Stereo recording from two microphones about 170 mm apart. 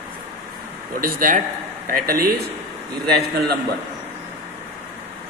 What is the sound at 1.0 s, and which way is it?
A man's voice, 55° right (ahead or behind).